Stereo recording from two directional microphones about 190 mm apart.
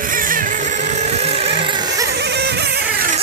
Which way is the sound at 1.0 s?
35° right (ahead or behind).